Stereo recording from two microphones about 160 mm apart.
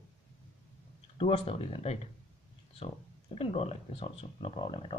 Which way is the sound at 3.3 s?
40° left (ahead or behind).